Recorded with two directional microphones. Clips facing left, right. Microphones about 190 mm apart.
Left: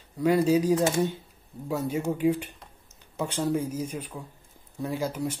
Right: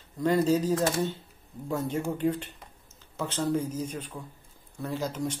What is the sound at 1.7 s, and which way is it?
Speech, 10° left (ahead or behind).